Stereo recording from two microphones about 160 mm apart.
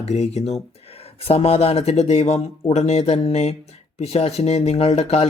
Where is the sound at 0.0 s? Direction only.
40° left (ahead or behind).